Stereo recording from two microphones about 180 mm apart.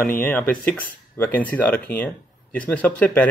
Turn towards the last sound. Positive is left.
turn(degrees=10)  # may be behind; listen again after turning